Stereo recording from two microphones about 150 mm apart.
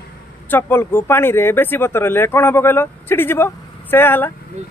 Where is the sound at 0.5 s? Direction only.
15° left (ahead or behind).